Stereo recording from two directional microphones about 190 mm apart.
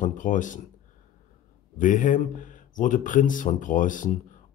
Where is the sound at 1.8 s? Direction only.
45° left (ahead or behind).